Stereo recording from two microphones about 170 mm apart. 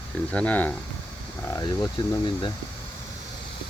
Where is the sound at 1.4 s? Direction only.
25° left (ahead or behind).